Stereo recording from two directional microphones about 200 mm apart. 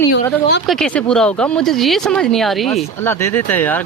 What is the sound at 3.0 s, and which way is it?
Speech, 10° left (ahead or behind).